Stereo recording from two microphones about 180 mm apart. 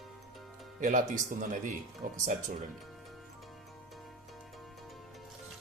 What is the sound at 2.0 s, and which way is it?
Speech, 45° right (ahead or behind).